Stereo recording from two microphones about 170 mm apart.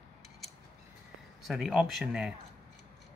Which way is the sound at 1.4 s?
Centre (ahead or behind).